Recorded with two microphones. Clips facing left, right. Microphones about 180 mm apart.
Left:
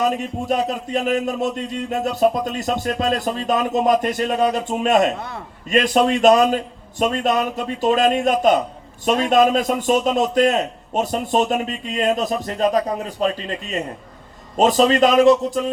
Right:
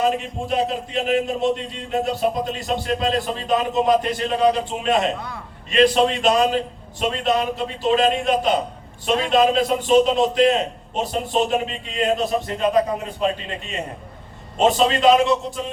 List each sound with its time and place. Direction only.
0.2 s a man's voice: 45° left (ahead or behind)
15.0 s speech: 40° left (ahead or behind)